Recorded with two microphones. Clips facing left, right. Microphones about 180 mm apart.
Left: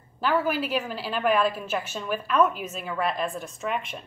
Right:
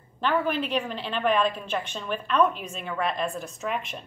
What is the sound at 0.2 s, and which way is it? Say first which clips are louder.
A woman's voice: left 1 dB; 5° left (ahead or behind).